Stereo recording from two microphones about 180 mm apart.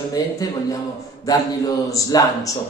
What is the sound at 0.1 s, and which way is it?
Speech, 20° left (ahead or behind).